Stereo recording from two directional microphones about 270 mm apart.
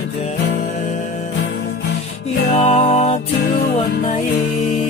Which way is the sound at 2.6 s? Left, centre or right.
Left.